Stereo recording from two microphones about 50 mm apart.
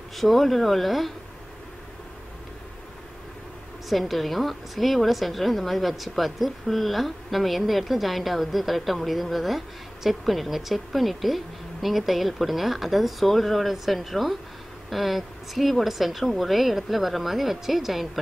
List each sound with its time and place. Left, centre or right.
0.1 s a woman's voice: centre
3.9 s a woman's voice: centre